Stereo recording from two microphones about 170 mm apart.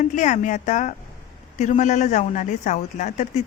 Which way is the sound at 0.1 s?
45° left (ahead or behind).